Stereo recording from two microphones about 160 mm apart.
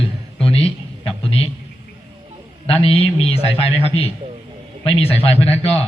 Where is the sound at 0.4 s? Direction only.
35° left (ahead or behind).